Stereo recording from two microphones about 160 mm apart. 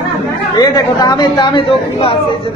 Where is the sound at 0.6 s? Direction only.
25° left (ahead or behind).